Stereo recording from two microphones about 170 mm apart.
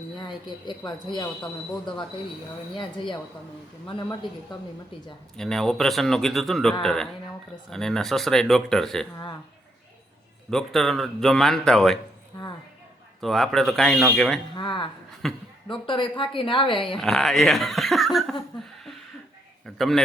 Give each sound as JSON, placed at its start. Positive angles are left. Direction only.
{"t": 0.3, "sound": "a woman's voice", "side_deg": 25}
{"t": 2.7, "sound": "a woman's voice", "side_deg": 30}
{"t": 5.4, "sound": "speech", "side_deg": 5}
{"t": 10.5, "sound": "speech", "side_deg": 0}
{"t": 13.2, "sound": "speech", "side_deg": 0}
{"t": 14.5, "sound": "a woman's voice", "side_deg": 30}
{"t": 15.2, "sound": "speech", "side_deg": 0}
{"t": 15.7, "sound": "a woman's voice", "side_deg": 30}
{"t": 17.0, "sound": "speech", "side_deg": 0}
{"t": 19.6, "sound": "speech", "side_deg": 0}